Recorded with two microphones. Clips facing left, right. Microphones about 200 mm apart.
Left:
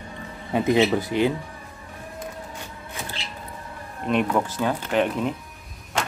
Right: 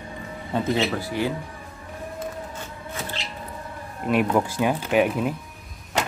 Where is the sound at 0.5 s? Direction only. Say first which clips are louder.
Left 4 dB; 15° left (ahead or behind).